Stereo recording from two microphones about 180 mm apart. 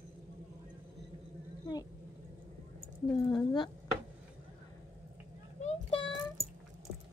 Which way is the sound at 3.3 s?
25° left (ahead or behind).